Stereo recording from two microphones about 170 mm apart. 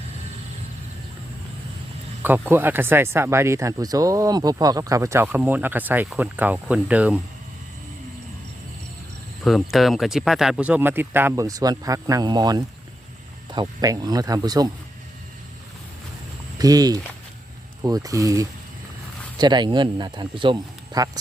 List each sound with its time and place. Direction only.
2.2 s speech: 10° right (ahead or behind)
9.4 s speech: centre (ahead or behind); by 14.7 s 25° right (ahead or behind)
16.6 s speech: 20° right (ahead or behind)